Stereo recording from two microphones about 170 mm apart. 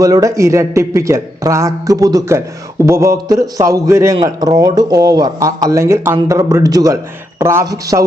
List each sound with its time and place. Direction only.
0.0 s a man's voice: 20° right (ahead or behind)